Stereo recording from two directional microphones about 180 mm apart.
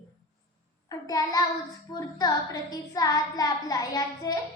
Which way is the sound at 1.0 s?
20° left (ahead or behind).